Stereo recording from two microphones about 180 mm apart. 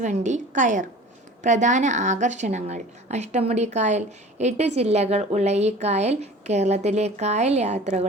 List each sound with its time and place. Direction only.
0.0 s a woman's voice: 40° right (ahead or behind)